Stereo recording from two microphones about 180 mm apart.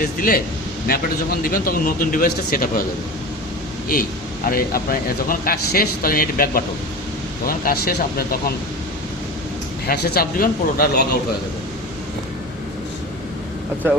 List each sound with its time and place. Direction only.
0.0 s speech: 55° left (ahead or behind)
4.4 s speech: 55° left (ahead or behind)
9.8 s speech: 60° left (ahead or behind)